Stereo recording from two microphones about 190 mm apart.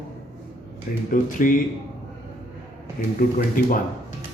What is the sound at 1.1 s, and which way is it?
Speech, 45° left (ahead or behind).